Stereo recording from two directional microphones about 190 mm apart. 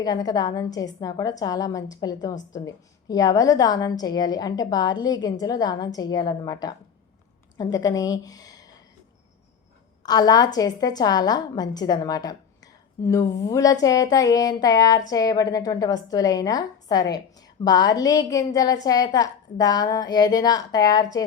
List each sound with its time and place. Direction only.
0.0 s a woman's voice: 20° left (ahead or behind)
10.0 s a woman's voice: 20° left (ahead or behind)